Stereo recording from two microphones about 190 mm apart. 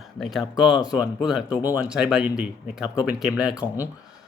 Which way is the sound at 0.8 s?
5° right (ahead or behind).